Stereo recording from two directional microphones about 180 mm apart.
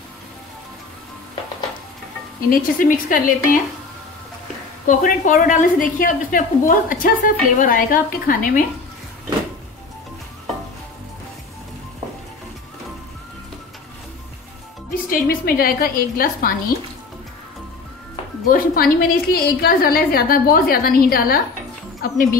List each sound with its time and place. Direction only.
2.5 s a woman's voice: 50° left (ahead or behind)
4.8 s a woman's voice: 45° left (ahead or behind)
15.0 s a woman's voice: 55° left (ahead or behind)
18.5 s a woman's voice: 55° left (ahead or behind)